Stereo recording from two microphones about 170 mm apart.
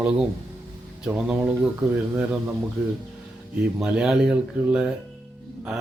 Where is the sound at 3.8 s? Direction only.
5° right (ahead or behind).